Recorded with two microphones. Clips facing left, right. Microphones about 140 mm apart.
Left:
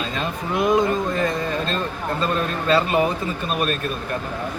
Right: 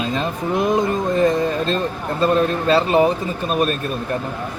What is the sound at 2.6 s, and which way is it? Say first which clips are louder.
Speech: right 2 dB; 35° right (ahead or behind).